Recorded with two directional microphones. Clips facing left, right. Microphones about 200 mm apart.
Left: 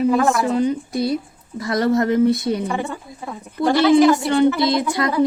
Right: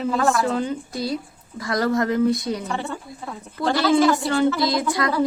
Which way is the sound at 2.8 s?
15° left (ahead or behind).